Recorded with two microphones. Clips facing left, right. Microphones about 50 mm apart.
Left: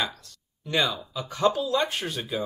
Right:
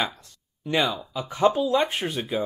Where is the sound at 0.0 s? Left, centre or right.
Right.